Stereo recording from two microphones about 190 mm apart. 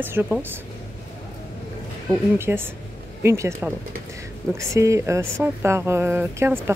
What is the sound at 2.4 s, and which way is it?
Speech, 10° right (ahead or behind).